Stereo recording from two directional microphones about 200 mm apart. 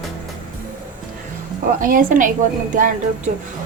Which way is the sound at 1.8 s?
45° right (ahead or behind).